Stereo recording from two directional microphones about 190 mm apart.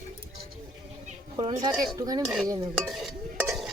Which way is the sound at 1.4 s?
20° right (ahead or behind).